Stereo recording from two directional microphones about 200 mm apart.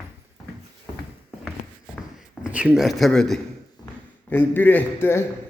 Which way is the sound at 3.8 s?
20° left (ahead or behind).